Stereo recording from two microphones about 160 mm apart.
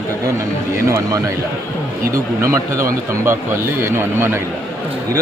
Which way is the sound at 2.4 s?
15° right (ahead or behind).